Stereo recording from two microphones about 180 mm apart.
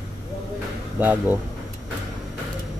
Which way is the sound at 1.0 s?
10° right (ahead or behind).